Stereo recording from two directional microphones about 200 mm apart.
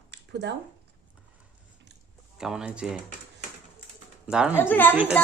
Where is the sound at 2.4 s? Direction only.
5° right (ahead or behind).